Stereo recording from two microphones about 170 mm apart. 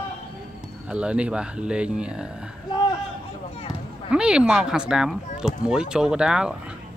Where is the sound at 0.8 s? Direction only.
5° right (ahead or behind).